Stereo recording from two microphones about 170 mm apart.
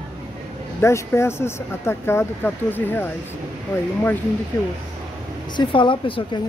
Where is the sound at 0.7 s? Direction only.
15° left (ahead or behind).